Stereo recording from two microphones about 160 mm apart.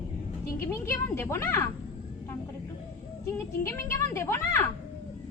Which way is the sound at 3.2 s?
15° left (ahead or behind).